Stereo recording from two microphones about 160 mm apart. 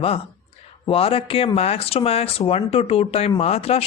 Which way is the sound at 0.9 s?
35° left (ahead or behind).